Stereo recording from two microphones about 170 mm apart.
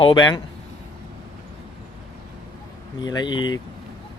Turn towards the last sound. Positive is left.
turn(degrees=25)  # may be behind; listen again after turning